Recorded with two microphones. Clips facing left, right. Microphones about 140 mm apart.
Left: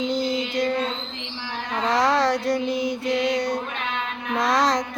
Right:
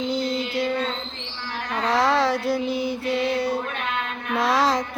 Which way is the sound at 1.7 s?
Centre (ahead or behind).